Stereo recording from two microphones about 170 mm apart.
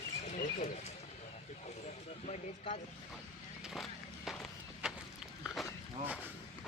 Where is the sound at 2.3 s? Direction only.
45° left (ahead or behind).